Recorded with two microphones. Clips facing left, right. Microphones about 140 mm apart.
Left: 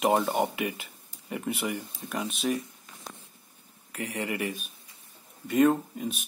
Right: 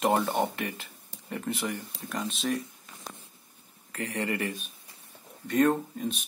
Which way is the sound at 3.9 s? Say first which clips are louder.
Right 1 dB; 10° left (ahead or behind).